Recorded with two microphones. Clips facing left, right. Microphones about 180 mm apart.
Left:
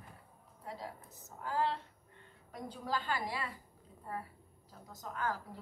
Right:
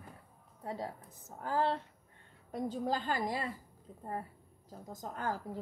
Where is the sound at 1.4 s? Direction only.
45° right (ahead or behind).